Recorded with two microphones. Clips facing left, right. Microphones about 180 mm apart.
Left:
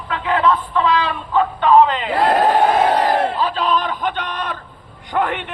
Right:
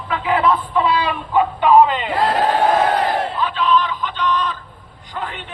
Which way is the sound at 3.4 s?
40° left (ahead or behind).